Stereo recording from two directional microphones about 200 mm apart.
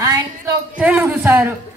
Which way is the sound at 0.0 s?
15° right (ahead or behind).